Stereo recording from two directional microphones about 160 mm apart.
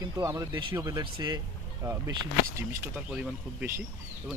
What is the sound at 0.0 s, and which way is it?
Speech, 20° right (ahead or behind).